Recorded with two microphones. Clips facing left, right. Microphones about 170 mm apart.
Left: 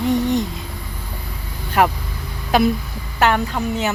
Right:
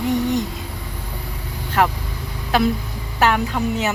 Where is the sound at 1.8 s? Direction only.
10° left (ahead or behind).